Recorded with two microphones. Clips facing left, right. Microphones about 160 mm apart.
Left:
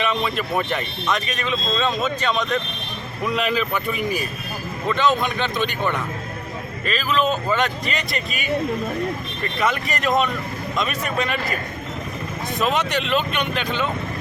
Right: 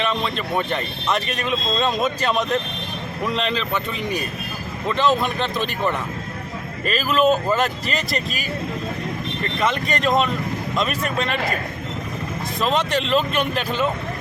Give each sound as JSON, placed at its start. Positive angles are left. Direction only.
{"t": 0.0, "sound": "speech", "side_deg": 5}
{"t": 3.2, "sound": "speech", "side_deg": 5}
{"t": 9.6, "sound": "speech", "side_deg": 5}
{"t": 12.5, "sound": "speech", "side_deg": 0}
{"t": 12.9, "sound": "speech", "side_deg": -30}
{"t": 13.1, "sound": "speech", "side_deg": 0}